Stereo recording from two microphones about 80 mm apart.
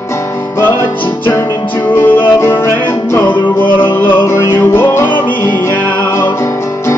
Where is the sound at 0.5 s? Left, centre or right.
Left.